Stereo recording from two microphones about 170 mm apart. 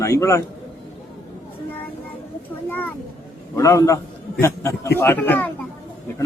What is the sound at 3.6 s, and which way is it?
Speech, 20° left (ahead or behind).